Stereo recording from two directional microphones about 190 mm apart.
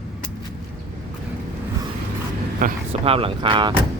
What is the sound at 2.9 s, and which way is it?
Speech, 30° right (ahead or behind).